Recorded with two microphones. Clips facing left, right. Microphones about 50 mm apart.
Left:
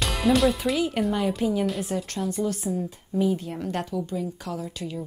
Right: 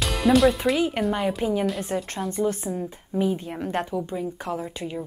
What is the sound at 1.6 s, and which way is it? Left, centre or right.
Speech, centre.